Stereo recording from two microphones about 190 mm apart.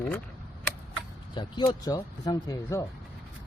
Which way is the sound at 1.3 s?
25° left (ahead or behind).